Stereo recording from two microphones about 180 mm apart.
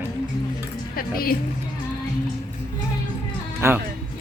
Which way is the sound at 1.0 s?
55° left (ahead or behind).